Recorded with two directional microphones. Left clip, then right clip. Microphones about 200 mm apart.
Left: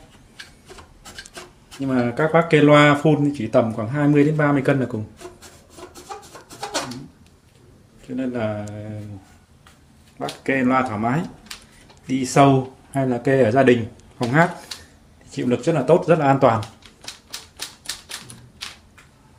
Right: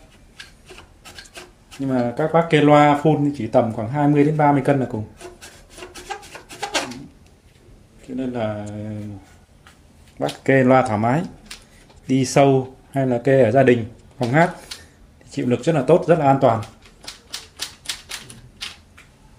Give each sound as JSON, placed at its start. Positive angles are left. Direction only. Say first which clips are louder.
{"t": 1.3, "sound": "speech", "louder": "even", "side_deg": 0}
{"t": 8.2, "sound": "speech", "louder": "even", "side_deg": 0}
{"t": 10.1, "sound": "speech", "louder": "right 5 dB", "side_deg": 0}